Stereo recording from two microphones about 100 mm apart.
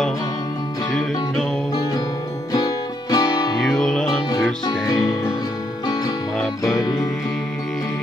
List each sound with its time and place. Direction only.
2.5 s music: 40° left (ahead or behind)
3.6 s music: 5° left (ahead or behind)
6.4 s music: centre (ahead or behind)
6.8 s music: 40° left (ahead or behind)